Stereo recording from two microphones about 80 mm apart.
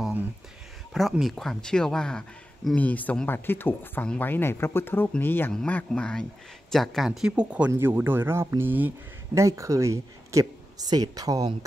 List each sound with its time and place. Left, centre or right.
1.2 s speech: centre
7.1 s speech: centre
7.7 s speech: right
9.3 s speech: right
10.9 s speech: right